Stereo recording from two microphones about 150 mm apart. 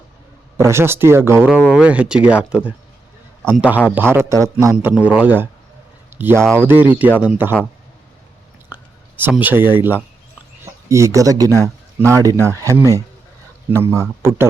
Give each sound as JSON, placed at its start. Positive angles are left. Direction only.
{"t": 0.5, "sound": "speech", "side_deg": -20}
{"t": 8.7, "sound": "speech", "side_deg": -10}